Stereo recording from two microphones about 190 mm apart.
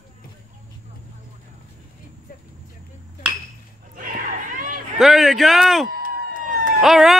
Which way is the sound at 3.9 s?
45° right (ahead or behind).